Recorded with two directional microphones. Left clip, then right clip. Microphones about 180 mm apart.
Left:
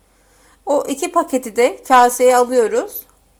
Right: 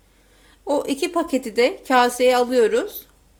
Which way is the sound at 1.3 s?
20° right (ahead or behind).